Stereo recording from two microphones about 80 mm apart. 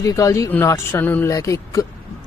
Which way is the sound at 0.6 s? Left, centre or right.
Left.